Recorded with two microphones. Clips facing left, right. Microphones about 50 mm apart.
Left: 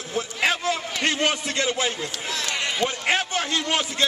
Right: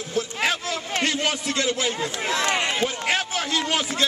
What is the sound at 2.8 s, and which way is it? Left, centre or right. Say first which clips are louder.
A man's voice: left 1 dB; centre.